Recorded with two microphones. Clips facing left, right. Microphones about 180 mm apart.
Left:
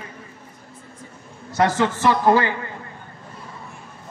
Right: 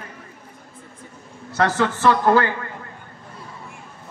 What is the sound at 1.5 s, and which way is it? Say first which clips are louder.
A man's voice: left 1 dB; 15° left (ahead or behind).